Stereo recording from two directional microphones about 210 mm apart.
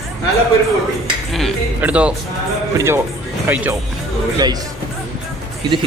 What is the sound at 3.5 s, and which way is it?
Speech, 10° right (ahead or behind).